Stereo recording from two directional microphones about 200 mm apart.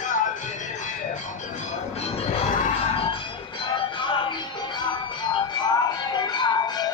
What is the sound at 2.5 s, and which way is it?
Music, 40° left (ahead or behind).